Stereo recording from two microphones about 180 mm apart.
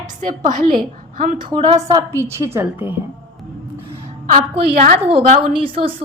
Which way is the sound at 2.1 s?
15° right (ahead or behind).